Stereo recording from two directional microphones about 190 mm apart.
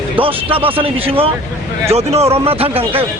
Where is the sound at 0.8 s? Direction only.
30° right (ahead or behind).